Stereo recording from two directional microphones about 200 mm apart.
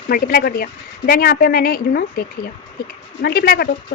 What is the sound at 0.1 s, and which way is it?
Speech, 50° left (ahead or behind).